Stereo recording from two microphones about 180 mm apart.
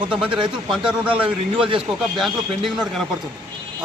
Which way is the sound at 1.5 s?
30° right (ahead or behind).